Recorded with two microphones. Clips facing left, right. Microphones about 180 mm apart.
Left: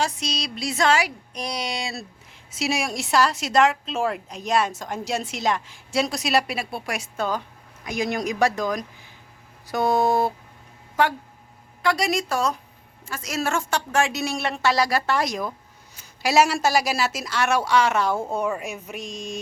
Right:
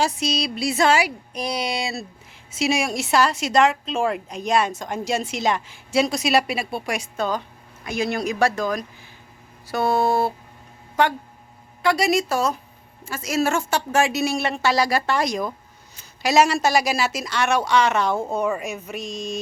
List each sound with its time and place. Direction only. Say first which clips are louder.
0.0 s a woman's voice: right 4 dB; 10° right (ahead or behind); by 10.3 s 15° left (ahead or behind)
11.0 s a woman's voice: right 1 dB; 5° left (ahead or behind)